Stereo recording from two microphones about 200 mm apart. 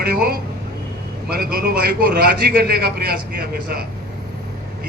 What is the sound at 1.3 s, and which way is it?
A man's voice, 50° right (ahead or behind).